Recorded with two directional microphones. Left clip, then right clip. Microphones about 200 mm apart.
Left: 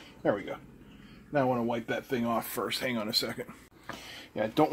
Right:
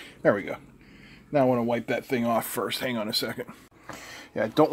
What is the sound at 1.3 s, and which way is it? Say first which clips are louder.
Speech: right 5 dB; 45° right (ahead or behind).